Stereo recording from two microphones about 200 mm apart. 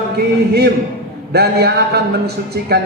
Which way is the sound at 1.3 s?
55° right (ahead or behind).